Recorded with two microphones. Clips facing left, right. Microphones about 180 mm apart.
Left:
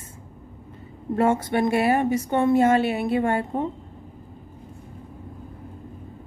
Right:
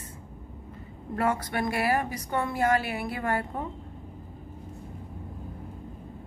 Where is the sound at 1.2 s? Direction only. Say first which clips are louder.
Left 7 dB; 25° left (ahead or behind).